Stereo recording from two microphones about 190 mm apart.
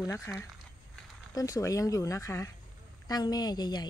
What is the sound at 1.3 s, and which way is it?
Speech, 20° left (ahead or behind).